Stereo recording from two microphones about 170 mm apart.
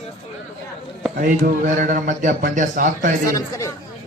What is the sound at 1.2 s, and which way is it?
Speech, 55° right (ahead or behind).